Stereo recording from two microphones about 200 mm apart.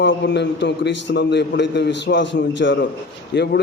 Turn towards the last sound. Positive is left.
turn(degrees=55)  # may be behind; listen again after turning